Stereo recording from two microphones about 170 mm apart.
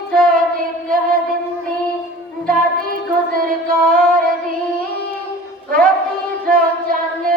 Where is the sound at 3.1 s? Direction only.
55° right (ahead or behind).